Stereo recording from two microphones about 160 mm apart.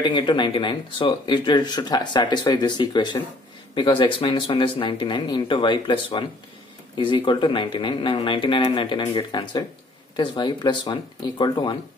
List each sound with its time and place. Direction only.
0.0 s speech: 30° left (ahead or behind)